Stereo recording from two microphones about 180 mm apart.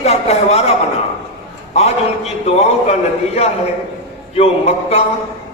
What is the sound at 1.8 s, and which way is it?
Speech, 35° left (ahead or behind).